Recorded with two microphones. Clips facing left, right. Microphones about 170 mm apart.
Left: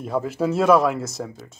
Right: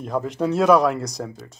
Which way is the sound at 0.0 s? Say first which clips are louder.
Even; 5° left (ahead or behind).